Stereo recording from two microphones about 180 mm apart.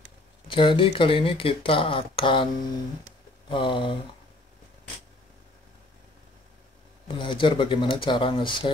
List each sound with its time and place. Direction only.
0.5 s speech: 30° left (ahead or behind)
3.4 s speech: 25° left (ahead or behind)
7.2 s speech: 25° left (ahead or behind)